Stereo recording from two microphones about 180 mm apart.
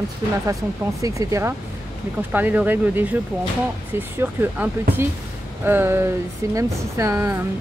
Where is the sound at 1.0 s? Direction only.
15° right (ahead or behind).